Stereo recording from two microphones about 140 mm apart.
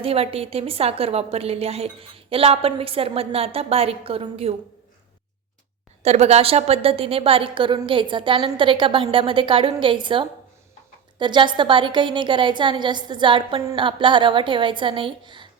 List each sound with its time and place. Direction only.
0.0 s a woman's voice: 45° right (ahead or behind)
6.0 s a woman's voice: 50° right (ahead or behind); by 15.4 s 35° right (ahead or behind)